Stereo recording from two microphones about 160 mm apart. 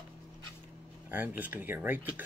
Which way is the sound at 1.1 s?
10° right (ahead or behind).